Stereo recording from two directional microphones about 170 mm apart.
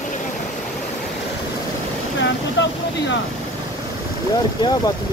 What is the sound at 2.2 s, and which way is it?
Speech, 90° left.